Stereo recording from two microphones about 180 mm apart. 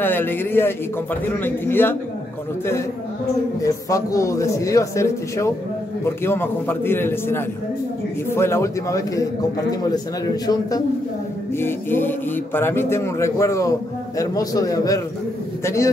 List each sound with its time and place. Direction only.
0.0 s speech: 10° left (ahead or behind)
3.6 s speech: 20° left (ahead or behind)
10.4 s a man's voice: 20° left (ahead or behind)